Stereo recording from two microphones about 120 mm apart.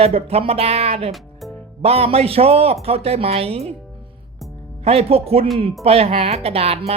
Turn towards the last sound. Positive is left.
turn(degrees=-55)  # may be behind; listen again after turning